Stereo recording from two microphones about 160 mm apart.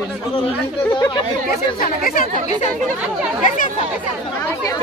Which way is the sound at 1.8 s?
60° left (ahead or behind).